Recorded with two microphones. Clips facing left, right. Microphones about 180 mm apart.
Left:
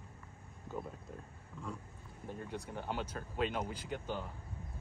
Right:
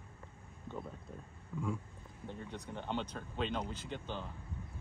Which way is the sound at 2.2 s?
10° left (ahead or behind).